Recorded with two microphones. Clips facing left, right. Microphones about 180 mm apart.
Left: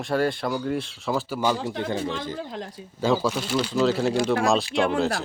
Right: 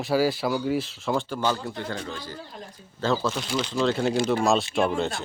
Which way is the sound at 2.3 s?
80° left.